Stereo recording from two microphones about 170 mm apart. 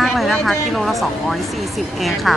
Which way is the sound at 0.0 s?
Centre (ahead or behind).